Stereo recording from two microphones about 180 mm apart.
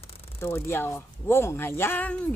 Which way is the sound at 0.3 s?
15° left (ahead or behind).